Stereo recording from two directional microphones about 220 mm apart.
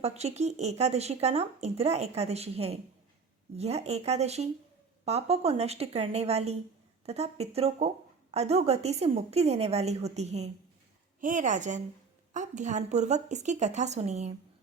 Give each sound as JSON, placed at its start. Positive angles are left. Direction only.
{"t": 0.0, "sound": "a woman's voice", "side_deg": -30}